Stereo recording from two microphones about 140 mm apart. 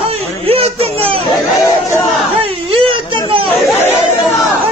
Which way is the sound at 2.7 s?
40° right (ahead or behind).